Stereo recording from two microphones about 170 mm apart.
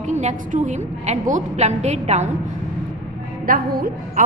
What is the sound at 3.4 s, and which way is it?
Speech, 60° right (ahead or behind).